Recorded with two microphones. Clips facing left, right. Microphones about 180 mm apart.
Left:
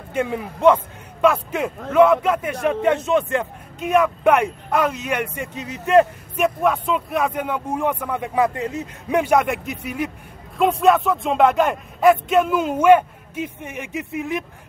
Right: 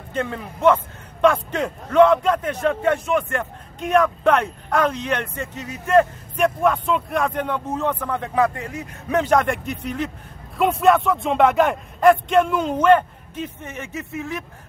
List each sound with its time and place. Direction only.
0.1 s a man's voice: 10° left (ahead or behind)
2.7 s speech: 20° left (ahead or behind)
3.8 s a man's voice: 5° left (ahead or behind)
6.3 s a man's voice: 5° left (ahead or behind); by 9.2 s 20° left (ahead or behind)
9.2 s a man's voice: 10° left (ahead or behind)
10.6 s speech: centre (ahead or behind); by 14.4 s 15° left (ahead or behind)